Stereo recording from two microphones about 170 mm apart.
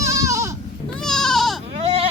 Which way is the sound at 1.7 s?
35° right (ahead or behind).